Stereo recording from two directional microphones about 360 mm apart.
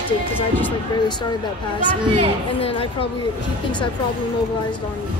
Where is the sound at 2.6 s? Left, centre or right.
Centre.